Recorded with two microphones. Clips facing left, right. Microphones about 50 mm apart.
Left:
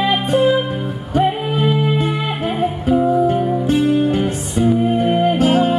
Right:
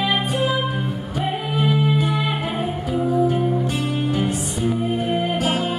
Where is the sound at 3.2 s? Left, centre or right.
Left.